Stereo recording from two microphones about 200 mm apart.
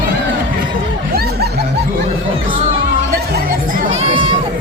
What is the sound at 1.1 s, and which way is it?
Snicker, 50° right (ahead or behind).